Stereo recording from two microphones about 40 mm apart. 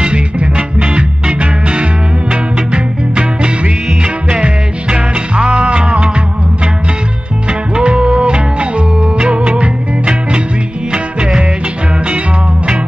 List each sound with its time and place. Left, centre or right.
0.0 s music: right
7.7 s music: right